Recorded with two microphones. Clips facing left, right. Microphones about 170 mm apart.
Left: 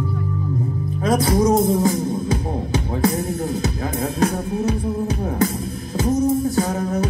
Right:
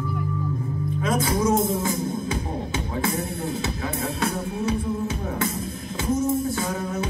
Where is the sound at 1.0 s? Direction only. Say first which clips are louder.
Left 6 dB; 40° left (ahead or behind).